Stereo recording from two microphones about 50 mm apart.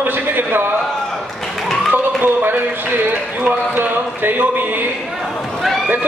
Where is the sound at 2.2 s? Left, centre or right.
Right.